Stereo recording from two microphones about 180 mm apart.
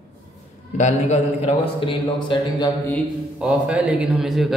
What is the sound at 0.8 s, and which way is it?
A man's voice, 40° left (ahead or behind).